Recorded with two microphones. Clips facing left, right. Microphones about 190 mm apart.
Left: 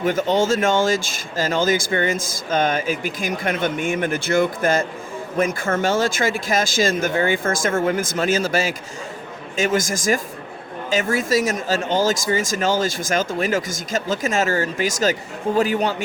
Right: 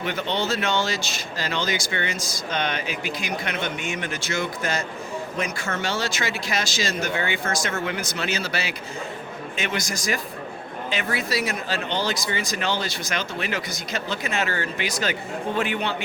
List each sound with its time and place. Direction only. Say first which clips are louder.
0.0 s a man's voice: left 7 dB; 45° left (ahead or behind)